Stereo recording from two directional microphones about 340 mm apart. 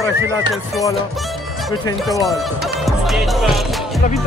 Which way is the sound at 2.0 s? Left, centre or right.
Centre.